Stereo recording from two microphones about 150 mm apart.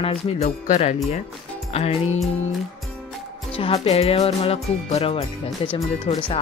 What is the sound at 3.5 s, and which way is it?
Music, 40° left (ahead or behind).